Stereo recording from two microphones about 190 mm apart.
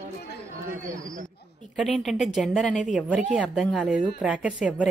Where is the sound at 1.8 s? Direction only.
Centre (ahead or behind).